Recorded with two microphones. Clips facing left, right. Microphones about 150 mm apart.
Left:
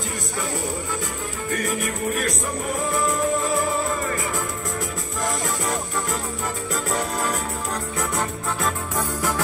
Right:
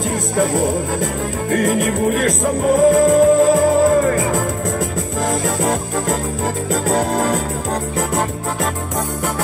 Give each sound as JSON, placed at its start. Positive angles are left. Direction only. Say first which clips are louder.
{"t": 0.4, "sound": "music", "louder": "right 11 dB", "side_deg": -90}
{"t": 7.0, "sound": "music", "louder": "right 8 dB", "side_deg": -45}